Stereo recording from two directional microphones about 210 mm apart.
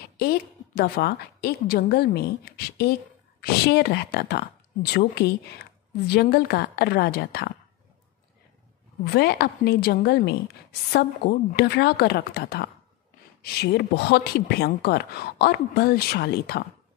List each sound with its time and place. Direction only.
0.2 s a woman's voice: 45° left (ahead or behind)
9.0 s a woman's voice: 50° left (ahead or behind)